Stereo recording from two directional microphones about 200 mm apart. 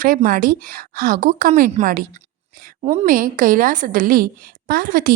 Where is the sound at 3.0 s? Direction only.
45° right (ahead or behind).